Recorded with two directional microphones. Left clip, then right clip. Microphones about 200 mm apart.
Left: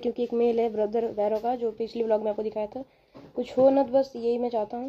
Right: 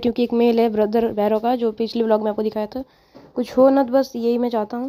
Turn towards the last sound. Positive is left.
turn(degrees=-40)  # may be behind; listen again after turning